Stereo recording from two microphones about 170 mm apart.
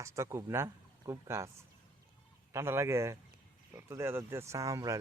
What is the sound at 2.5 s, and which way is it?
Speech, 15° right (ahead or behind).